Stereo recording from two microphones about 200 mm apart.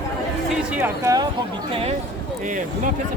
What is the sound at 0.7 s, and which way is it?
Speech, 10° right (ahead or behind).